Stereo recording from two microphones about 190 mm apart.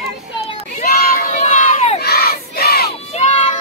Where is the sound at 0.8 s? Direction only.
50° left (ahead or behind).